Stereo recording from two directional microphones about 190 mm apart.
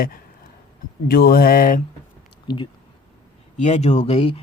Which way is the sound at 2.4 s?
25° left (ahead or behind).